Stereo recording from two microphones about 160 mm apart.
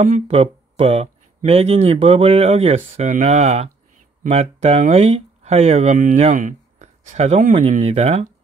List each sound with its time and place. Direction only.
0.0 s speech: 40° right (ahead or behind)